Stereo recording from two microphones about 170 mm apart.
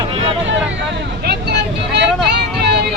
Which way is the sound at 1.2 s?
75° right (ahead or behind).